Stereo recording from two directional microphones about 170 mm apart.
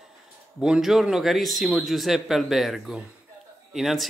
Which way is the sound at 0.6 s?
5° right (ahead or behind).